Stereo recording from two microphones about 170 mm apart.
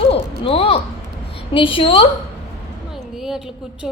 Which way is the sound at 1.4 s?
30° left (ahead or behind).